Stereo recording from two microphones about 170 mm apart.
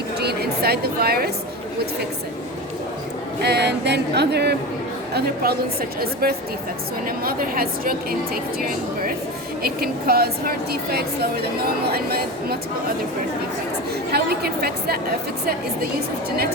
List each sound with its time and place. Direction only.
0.2 s a sound: 70° right (ahead or behind)
3.4 s a capella: 80° right
5.1 s a woman's voice: 65° right (ahead or behind)
9.6 s a woman's voice: 65° right (ahead or behind)
14.1 s a woman's voice: 65° right (ahead or behind)